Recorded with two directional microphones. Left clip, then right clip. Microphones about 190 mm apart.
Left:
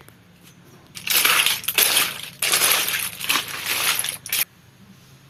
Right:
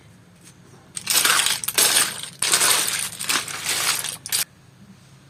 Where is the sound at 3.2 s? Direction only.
Centre (ahead or behind).